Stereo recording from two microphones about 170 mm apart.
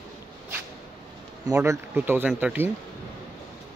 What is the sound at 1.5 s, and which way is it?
Speech, 15° right (ahead or behind).